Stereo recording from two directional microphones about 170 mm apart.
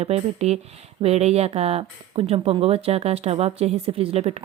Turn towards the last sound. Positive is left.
turn(degrees=-35)  # may be behind; listen again after turning